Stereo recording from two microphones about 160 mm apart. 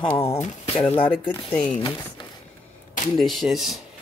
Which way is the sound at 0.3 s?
40° left (ahead or behind).